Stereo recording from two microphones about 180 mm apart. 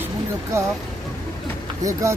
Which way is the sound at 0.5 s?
15° right (ahead or behind).